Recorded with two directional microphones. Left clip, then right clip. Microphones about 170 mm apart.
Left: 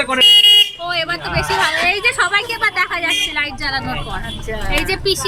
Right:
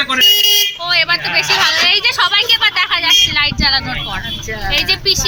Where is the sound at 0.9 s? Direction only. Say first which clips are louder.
Right 6 dB; 10° left (ahead or behind).